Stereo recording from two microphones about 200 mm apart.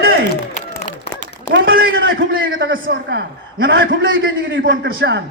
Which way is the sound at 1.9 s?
75° right (ahead or behind).